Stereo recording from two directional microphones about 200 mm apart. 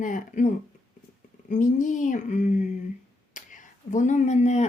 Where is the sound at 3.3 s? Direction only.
40° left (ahead or behind).